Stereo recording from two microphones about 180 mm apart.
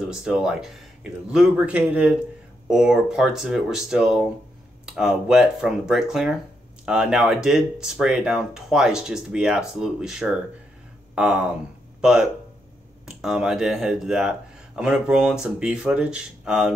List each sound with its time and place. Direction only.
0.1 s a man's voice: 5° right (ahead or behind)